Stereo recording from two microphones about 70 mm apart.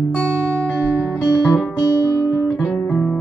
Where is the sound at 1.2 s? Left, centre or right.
Left.